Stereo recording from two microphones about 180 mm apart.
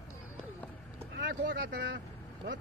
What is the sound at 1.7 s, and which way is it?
Speech, 75° right (ahead or behind).